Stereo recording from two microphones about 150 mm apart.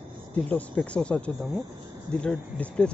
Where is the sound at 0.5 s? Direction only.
10° left (ahead or behind).